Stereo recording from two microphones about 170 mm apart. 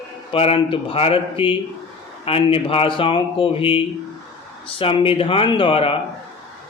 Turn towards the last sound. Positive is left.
turn(degrees=35)  # may be behind; listen again after turning